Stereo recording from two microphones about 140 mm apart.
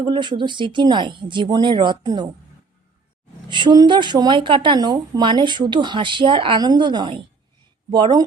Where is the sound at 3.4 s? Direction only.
35° right (ahead or behind).